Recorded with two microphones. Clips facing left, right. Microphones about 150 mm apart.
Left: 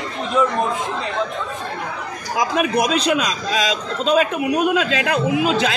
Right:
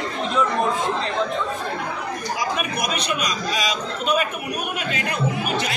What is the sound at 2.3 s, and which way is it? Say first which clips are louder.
A man's voice: left 9 dB; 90° left.